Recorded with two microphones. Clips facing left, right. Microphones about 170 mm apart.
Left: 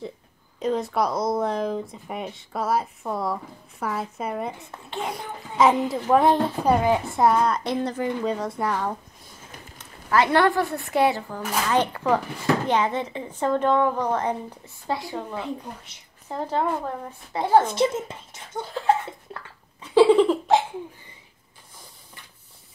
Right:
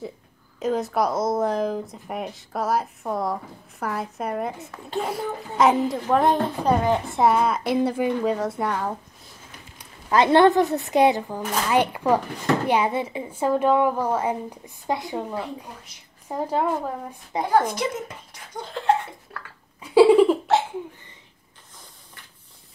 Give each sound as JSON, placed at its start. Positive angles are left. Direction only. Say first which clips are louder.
{"t": 0.6, "sound": "speech", "louder": "right 1 dB", "side_deg": 0}
{"t": 7.2, "sound": "speech", "louder": "right 1 dB", "side_deg": -5}
{"t": 9.8, "sound": "a woman's voice", "louder": "right 1 dB", "side_deg": -20}
{"t": 17.5, "sound": "speech", "louder": "left 3 dB", "side_deg": 25}
{"t": 19.3, "sound": "a sound", "louder": "left 1 dB", "side_deg": 20}
{"t": 19.8, "sound": "a sound", "louder": "right 2 dB", "side_deg": -10}